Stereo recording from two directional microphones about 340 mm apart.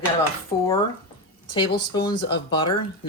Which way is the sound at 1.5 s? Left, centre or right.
Centre.